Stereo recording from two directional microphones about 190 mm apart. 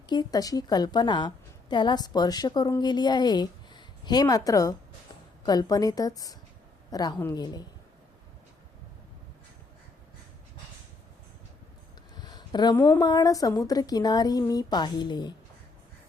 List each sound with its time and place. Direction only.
0.1 s a woman's voice: 20° left (ahead or behind)
12.2 s a sound: 20° left (ahead or behind)
12.7 s a woman's voice: 10° left (ahead or behind)